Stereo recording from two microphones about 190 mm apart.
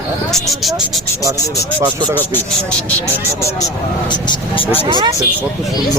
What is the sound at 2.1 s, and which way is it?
Speech, 10° left (ahead or behind).